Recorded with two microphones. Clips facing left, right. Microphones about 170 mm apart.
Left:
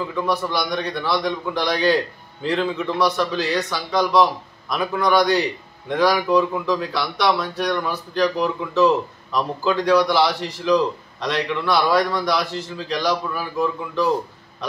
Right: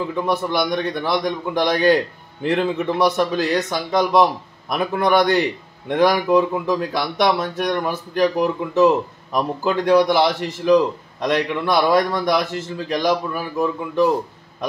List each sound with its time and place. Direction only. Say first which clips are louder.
0.5 s a man's voice: right 3 dB; 50° right (ahead or behind)